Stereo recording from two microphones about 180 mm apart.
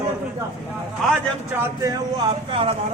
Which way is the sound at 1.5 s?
15° right (ahead or behind).